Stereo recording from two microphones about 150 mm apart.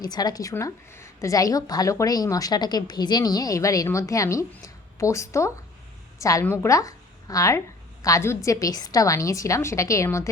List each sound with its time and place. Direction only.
0.0 s a woman's voice: 25° left (ahead or behind)